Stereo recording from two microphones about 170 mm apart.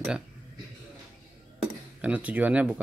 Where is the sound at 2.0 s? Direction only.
10° right (ahead or behind).